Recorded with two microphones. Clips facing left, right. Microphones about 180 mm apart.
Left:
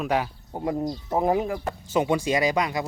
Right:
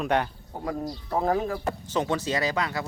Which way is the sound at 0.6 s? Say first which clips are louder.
Left 4 dB; 20° left (ahead or behind).